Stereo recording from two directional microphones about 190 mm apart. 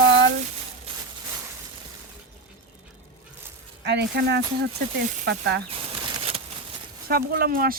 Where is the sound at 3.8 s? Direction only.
65° right (ahead or behind).